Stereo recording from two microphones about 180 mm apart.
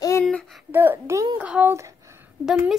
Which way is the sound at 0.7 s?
10° right (ahead or behind).